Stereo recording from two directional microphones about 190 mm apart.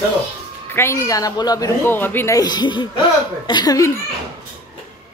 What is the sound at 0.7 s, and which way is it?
Speech, 15° left (ahead or behind).